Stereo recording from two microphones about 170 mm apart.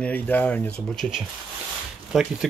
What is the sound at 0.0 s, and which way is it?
Speech, 10° left (ahead or behind).